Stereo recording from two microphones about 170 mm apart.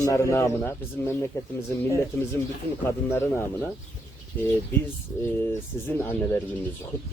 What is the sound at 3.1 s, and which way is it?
Speech, 15° left (ahead or behind).